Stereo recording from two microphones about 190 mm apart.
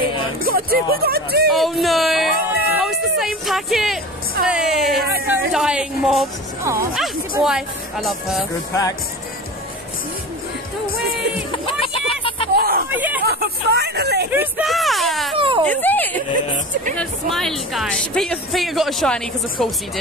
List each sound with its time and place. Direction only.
0.4 s speech: 50° right (ahead or behind)
1.5 s music: centre (ahead or behind)
3.4 s speech: centre (ahead or behind)
6.6 s speech: 15° right (ahead or behind)
7.0 s speech: 5° right (ahead or behind)
11.0 s music: centre (ahead or behind)
12.5 s hubbub: 55° right (ahead or behind)
12.9 s hubbub: 10° right (ahead or behind)
13.2 s hubbub: 55° right (ahead or behind)
14.3 s a sound: 5° right (ahead or behind)
15.3 s a sound: 25° right (ahead or behind)
15.6 s speech: 10° left (ahead or behind)